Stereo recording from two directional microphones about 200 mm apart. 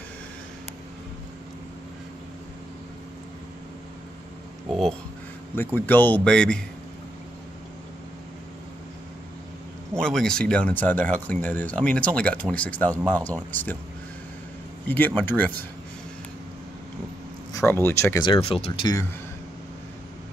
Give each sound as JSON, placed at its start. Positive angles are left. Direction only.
{"t": 5.8, "sound": "speech", "side_deg": 10}
{"t": 9.9, "sound": "speech", "side_deg": 5}
{"t": 14.9, "sound": "speech", "side_deg": 10}
{"t": 17.5, "sound": "speech", "side_deg": 15}
{"t": 18.2, "sound": "speech", "side_deg": 25}